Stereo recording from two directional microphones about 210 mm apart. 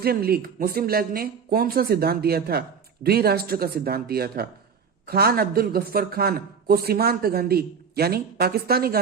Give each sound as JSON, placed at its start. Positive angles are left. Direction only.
{"t": 0.0, "sound": "speech", "side_deg": -45}